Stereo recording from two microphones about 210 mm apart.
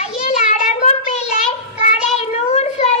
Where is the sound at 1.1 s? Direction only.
35° left (ahead or behind).